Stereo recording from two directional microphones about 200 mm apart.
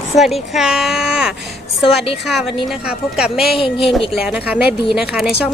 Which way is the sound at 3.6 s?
30° left (ahead or behind).